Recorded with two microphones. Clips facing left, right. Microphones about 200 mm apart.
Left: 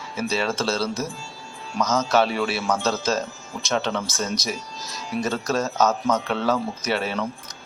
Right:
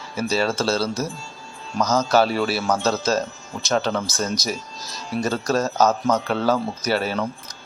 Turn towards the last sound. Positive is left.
turn(degrees=0)  # may be behind; listen again after turning